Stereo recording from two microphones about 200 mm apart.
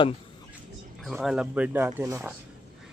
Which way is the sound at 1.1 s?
5° right (ahead or behind).